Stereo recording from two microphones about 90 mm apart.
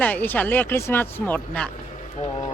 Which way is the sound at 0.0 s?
20° left (ahead or behind).